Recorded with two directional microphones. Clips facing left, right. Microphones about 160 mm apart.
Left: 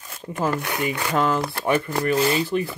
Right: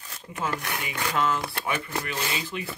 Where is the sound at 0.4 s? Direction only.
40° left (ahead or behind).